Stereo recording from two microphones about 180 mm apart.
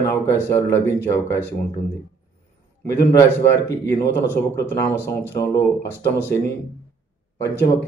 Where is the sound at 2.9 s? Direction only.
15° left (ahead or behind).